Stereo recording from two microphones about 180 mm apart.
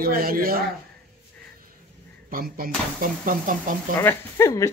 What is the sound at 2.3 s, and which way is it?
Speech, 55° right (ahead or behind).